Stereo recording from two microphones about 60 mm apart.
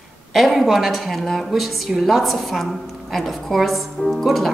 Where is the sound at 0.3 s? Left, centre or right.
Centre.